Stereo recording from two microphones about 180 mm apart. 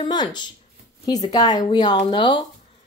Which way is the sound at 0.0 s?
25° left (ahead or behind).